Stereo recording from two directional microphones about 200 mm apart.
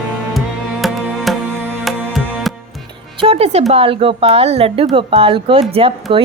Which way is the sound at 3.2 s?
30° right (ahead or behind).